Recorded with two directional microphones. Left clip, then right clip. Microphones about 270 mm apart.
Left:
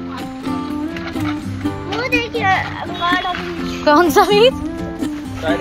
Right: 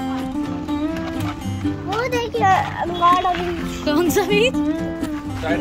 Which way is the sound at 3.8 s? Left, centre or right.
Centre.